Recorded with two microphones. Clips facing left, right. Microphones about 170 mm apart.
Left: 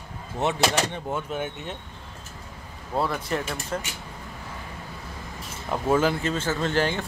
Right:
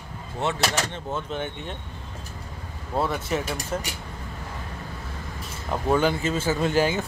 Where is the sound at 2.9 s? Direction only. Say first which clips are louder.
Right 1 dB; centre (ahead or behind).